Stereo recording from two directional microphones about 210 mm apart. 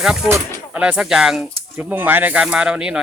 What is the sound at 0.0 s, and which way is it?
Speech, 5° right (ahead or behind).